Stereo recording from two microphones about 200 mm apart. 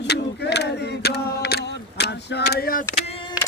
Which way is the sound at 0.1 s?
55° left (ahead or behind).